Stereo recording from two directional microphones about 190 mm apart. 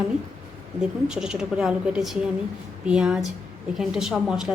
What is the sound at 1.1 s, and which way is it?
A woman's voice, 5° right (ahead or behind).